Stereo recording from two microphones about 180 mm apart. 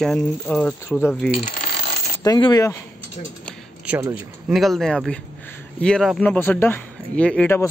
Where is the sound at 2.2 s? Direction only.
25° left (ahead or behind).